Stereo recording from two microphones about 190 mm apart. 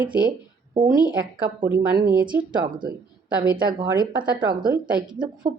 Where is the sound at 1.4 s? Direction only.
10° right (ahead or behind).